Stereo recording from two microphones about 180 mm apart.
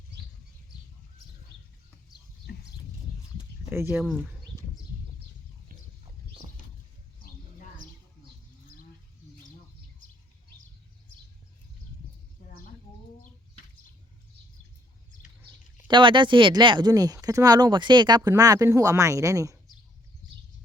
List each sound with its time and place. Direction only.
2.5 s a sound: 60° left (ahead or behind)
3.7 s speech: 15° right (ahead or behind)
4.0 s speech: 5° right (ahead or behind)
15.9 s speech: 25° right (ahead or behind)